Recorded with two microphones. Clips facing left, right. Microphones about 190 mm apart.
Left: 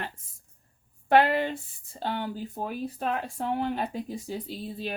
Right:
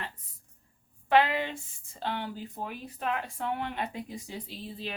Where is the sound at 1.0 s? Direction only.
40° left (ahead or behind).